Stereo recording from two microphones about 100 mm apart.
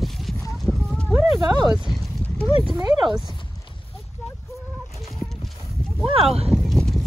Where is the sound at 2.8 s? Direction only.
45° right (ahead or behind).